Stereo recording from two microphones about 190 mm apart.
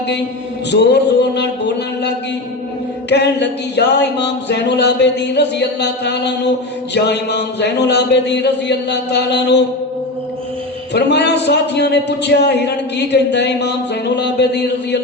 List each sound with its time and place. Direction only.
0.7 s a man's voice: 60° left (ahead or behind)
10.9 s a man's voice: 60° left (ahead or behind)